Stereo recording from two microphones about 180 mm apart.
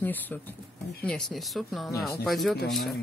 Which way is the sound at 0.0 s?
10° left (ahead or behind).